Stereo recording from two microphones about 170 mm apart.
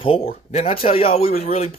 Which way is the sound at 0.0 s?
35° left (ahead or behind).